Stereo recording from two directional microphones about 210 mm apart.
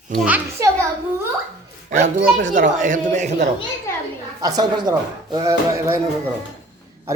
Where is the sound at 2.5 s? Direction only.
35° right (ahead or behind).